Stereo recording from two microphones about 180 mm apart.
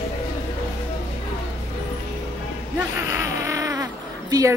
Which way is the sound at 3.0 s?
15° right (ahead or behind).